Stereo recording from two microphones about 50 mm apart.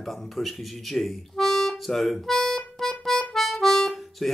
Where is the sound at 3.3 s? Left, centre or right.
Centre.